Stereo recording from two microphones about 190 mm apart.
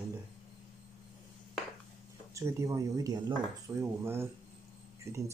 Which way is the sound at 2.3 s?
15° right (ahead or behind).